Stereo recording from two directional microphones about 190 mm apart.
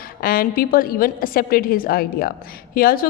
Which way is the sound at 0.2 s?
50° left (ahead or behind).